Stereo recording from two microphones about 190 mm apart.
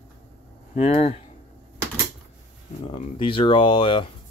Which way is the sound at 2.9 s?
30° left (ahead or behind).